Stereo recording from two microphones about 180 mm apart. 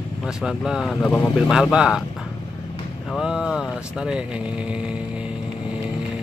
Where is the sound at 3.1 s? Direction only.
5° right (ahead or behind).